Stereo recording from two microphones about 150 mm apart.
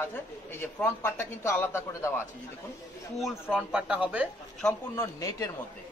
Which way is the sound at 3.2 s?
5° right (ahead or behind).